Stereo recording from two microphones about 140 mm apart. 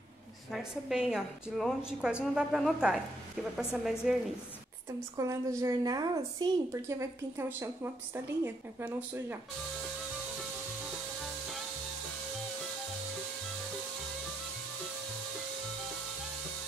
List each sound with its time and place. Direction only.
0.5 s a woman's voice: 5° right (ahead or behind)
5.1 s a woman's voice: 20° right (ahead or behind)